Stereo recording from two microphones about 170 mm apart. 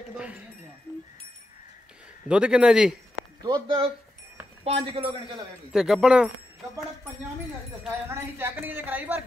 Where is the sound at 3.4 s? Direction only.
30° right (ahead or behind).